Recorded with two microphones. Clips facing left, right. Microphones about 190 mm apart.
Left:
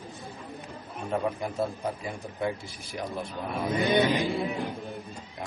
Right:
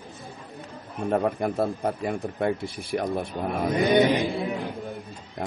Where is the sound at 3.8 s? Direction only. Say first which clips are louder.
Right 4 dB; 15° right (ahead or behind).